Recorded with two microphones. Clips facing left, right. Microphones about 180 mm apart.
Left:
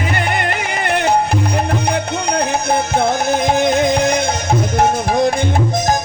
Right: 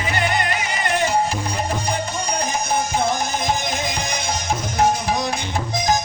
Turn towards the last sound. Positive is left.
turn(degrees=55)  # may be behind; listen again after turning